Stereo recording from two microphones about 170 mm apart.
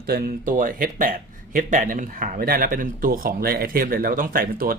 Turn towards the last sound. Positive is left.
turn(degrees=-55)  # may be behind; listen again after turning